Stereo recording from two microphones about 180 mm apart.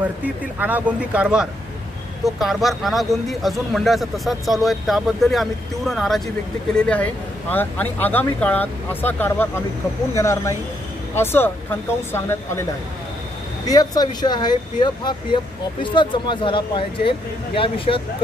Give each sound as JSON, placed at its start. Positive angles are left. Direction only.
{"t": 0.0, "sound": "speech", "side_deg": -10}
{"t": 13.7, "sound": "speech", "side_deg": 20}